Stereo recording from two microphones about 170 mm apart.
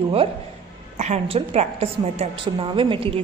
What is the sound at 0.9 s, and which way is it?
A woman's voice, 40° right (ahead or behind).